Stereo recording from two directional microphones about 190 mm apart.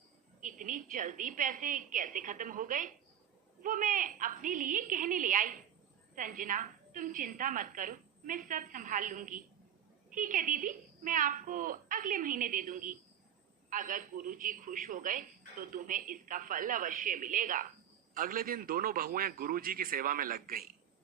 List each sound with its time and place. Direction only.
0.4 s a woman's voice: 45° right (ahead or behind)